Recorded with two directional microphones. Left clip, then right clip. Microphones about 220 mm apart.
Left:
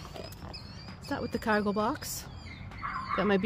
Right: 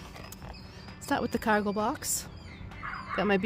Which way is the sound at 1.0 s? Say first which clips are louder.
Right 3 dB; 30° right (ahead or behind).